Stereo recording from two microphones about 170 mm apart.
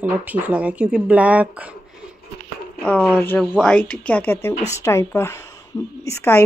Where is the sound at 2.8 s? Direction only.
5° left (ahead or behind).